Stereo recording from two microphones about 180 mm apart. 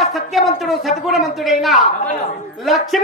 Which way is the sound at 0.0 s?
Centre (ahead or behind).